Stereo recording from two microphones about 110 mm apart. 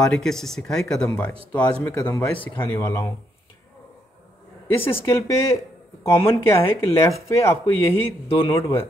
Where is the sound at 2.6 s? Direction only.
25° left (ahead or behind).